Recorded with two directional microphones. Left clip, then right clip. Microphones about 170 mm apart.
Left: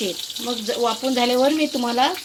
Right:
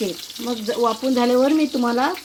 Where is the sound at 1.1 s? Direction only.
40° right (ahead or behind).